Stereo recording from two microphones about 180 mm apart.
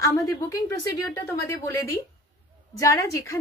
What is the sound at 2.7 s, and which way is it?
Speech, 15° left (ahead or behind).